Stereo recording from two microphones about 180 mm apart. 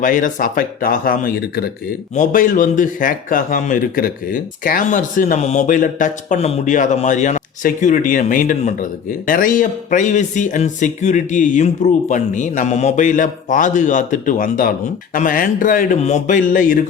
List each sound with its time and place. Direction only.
0.0 s speech: 50° left (ahead or behind)